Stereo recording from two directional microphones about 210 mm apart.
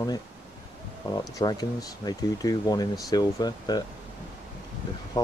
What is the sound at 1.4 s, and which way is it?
Speech, 20° left (ahead or behind).